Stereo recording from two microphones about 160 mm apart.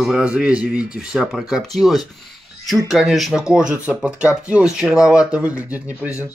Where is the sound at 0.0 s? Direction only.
5° right (ahead or behind).